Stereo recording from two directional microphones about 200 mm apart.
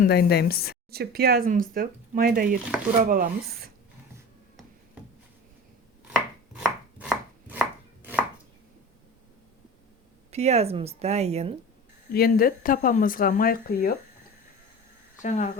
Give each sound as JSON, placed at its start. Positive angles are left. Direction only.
{"t": 0.0, "sound": "speech", "side_deg": 50}
{"t": 0.9, "sound": "speech", "side_deg": -50}
{"t": 6.1, "sound": "chopping", "side_deg": -5}
{"t": 10.3, "sound": "speech", "side_deg": -30}
{"t": 12.1, "sound": "speech", "side_deg": 50}
{"t": 15.2, "sound": "speech", "side_deg": 40}